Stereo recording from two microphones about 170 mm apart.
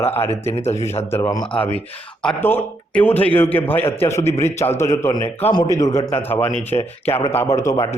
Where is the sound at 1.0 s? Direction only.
15° left (ahead or behind).